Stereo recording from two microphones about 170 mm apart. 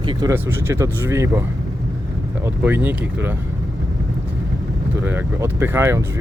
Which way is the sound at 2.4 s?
10° right (ahead or behind).